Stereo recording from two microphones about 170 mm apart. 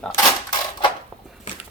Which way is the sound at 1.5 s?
45° left (ahead or behind).